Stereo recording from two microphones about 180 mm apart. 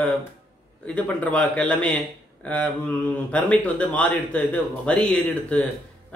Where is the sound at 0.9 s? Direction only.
10° left (ahead or behind).